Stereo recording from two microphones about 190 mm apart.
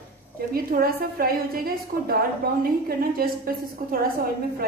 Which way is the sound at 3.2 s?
50° right (ahead or behind).